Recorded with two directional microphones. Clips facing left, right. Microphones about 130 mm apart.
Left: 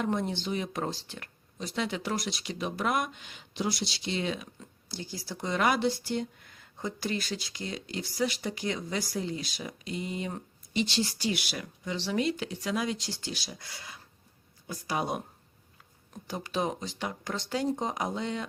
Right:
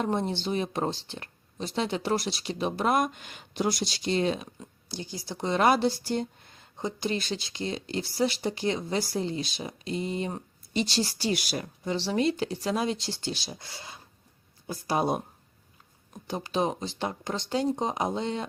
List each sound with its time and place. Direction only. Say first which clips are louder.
0.0 s speech: right 2 dB; 30° right (ahead or behind)
4.9 s speech: right 2 dB; 20° right (ahead or behind)
16.2 s speech: right 3 dB; 25° right (ahead or behind)